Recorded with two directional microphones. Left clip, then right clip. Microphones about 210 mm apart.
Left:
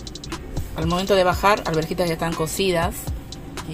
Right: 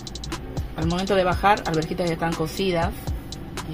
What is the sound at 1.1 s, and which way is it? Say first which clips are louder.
Speech: left 2 dB; 25° left (ahead or behind).